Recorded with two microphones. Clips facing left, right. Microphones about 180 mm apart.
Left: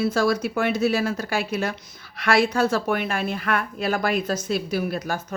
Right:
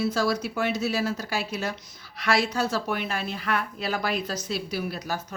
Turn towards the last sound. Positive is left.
turn(degrees=50)  # may be behind; listen again after turning